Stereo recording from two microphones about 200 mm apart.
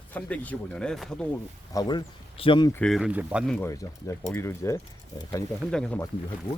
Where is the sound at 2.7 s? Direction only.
Centre (ahead or behind).